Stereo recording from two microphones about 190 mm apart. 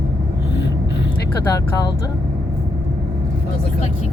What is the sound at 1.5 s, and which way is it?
Speech, 20° left (ahead or behind).